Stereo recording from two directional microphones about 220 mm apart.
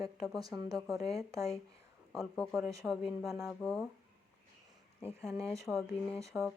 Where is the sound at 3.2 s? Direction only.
15° right (ahead or behind).